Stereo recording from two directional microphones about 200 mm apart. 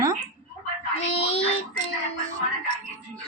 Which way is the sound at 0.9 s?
30° left (ahead or behind).